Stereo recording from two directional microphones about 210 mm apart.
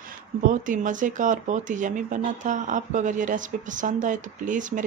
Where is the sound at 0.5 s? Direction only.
40° right (ahead or behind).